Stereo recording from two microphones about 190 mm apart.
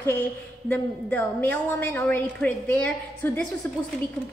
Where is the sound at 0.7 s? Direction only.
10° left (ahead or behind).